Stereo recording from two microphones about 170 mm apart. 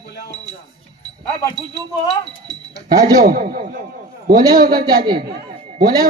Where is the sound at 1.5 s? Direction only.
25° right (ahead or behind).